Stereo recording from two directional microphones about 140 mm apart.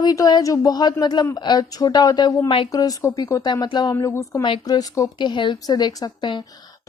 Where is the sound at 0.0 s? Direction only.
30° left (ahead or behind).